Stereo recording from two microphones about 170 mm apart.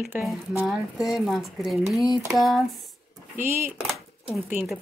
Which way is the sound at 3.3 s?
15° right (ahead or behind).